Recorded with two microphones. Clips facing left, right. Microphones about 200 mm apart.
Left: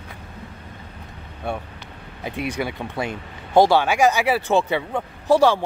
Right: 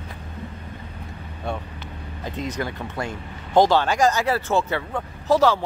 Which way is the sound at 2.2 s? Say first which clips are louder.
Left 2 dB; 10° left (ahead or behind).